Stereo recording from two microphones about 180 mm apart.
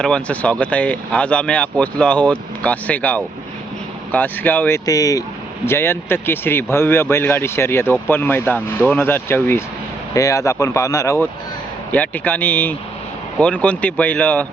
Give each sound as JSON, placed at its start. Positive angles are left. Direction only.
{"t": 0.0, "sound": "speech", "side_deg": 5}